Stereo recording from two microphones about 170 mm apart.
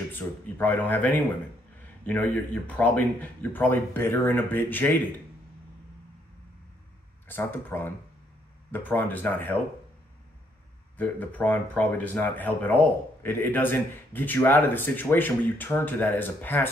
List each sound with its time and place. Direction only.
0.1 s speech: 10° left (ahead or behind)
7.2 s speech: 10° left (ahead or behind)
11.0 s speech: 10° left (ahead or behind)